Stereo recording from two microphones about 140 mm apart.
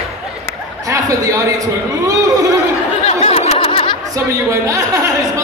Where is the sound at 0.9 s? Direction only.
25° right (ahead or behind).